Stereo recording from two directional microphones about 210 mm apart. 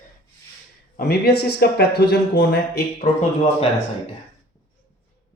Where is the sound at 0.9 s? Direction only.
45° left (ahead or behind).